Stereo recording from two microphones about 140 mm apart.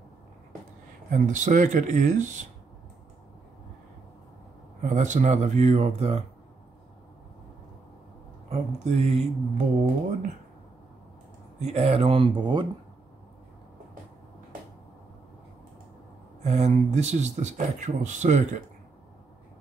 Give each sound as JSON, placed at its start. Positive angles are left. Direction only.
{"t": 1.1, "sound": "speech", "side_deg": -65}
{"t": 4.8, "sound": "speech", "side_deg": -60}
{"t": 8.5, "sound": "speech", "side_deg": -55}
{"t": 11.6, "sound": "speech", "side_deg": -50}
{"t": 16.4, "sound": "speech", "side_deg": -50}